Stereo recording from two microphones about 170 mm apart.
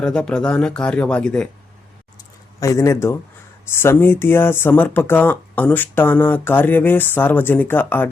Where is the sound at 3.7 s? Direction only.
15° left (ahead or behind).